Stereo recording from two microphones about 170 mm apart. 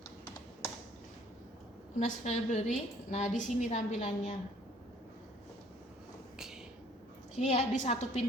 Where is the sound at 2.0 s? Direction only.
40° left (ahead or behind).